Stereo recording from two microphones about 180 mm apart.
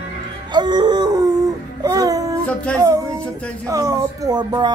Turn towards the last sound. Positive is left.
turn(degrees=-25)  # may be behind; listen again after turning